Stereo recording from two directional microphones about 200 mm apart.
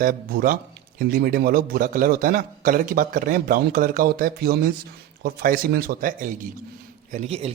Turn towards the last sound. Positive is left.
turn(degrees=-30)  # may be behind; listen again after turning